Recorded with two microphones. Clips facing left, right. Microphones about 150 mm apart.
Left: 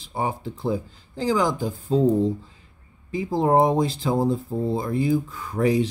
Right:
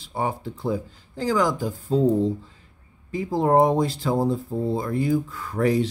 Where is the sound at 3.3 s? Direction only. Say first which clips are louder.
Even; 20° left (ahead or behind).